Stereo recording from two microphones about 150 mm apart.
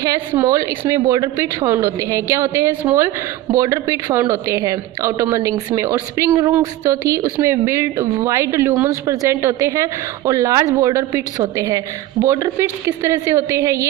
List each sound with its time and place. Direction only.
0.3 s a woman's voice: 20° right (ahead or behind)